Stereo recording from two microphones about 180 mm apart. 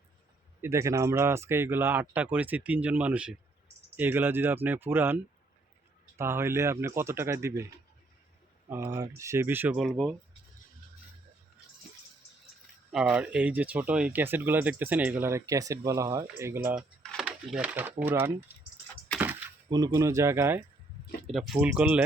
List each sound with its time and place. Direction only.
0.6 s speech: 15° right (ahead or behind)
8.7 s speech: 15° right (ahead or behind)
12.9 s speech: 5° right (ahead or behind)
16.7 s speech: centre (ahead or behind)
19.7 s speech: 20° right (ahead or behind)
21.2 s speech: centre (ahead or behind)